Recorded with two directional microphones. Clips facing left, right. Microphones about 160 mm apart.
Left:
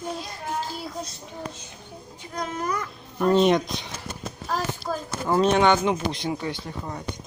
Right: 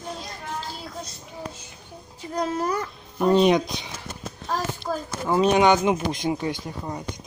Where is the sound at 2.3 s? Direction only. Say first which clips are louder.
Right 4 dB; 30° right (ahead or behind).